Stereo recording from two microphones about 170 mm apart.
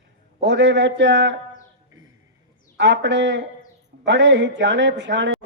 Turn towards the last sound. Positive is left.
turn(degrees=-90)